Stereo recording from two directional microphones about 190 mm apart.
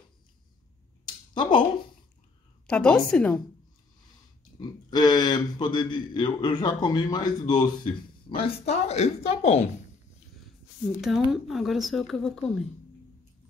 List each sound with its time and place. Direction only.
1.3 s speech: 25° left (ahead or behind)
2.6 s speech: 5° left (ahead or behind)
4.6 s a man's voice: 20° left (ahead or behind)
11.0 s speech: centre (ahead or behind)